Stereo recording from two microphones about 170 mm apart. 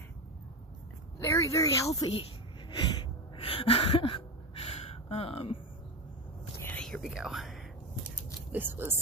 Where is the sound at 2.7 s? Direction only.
25° left (ahead or behind).